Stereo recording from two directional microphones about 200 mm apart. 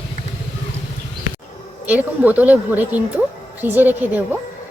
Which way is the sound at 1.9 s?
10° right (ahead or behind).